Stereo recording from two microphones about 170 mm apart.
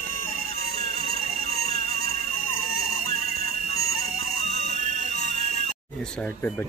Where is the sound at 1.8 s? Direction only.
40° left (ahead or behind).